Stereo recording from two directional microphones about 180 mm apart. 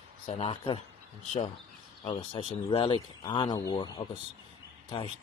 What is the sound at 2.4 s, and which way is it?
Speech, 30° left (ahead or behind).